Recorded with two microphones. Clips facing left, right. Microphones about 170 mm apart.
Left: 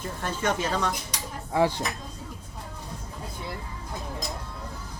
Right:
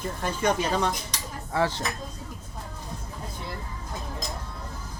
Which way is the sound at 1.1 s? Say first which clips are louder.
Left 1 dB; 15° left (ahead or behind).